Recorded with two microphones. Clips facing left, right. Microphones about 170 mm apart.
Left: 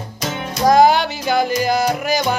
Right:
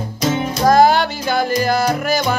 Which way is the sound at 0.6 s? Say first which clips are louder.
Even; 15° left (ahead or behind).